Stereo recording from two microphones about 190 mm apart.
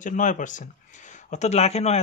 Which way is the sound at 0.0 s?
40° left (ahead or behind).